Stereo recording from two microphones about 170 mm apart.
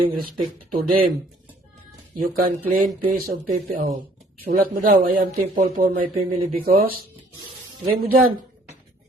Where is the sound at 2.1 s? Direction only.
60° right (ahead or behind).